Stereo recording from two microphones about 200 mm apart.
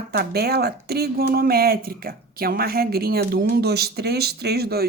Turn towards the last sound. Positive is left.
turn(degrees=-55)  # may be behind; listen again after turning